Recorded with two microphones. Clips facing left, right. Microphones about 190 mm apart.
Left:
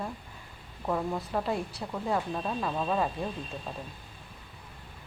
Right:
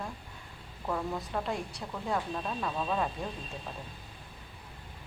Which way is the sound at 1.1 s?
Centre (ahead or behind).